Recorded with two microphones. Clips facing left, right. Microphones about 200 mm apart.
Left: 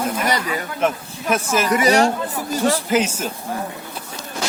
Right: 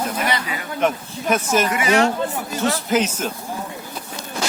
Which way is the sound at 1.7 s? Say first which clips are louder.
Left 5 dB; 40° left (ahead or behind).